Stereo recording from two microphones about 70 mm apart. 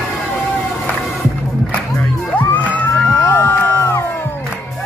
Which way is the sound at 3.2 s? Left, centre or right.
Left.